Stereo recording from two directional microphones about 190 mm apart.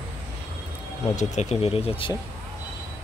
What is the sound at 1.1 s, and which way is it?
Speech, 40° left (ahead or behind).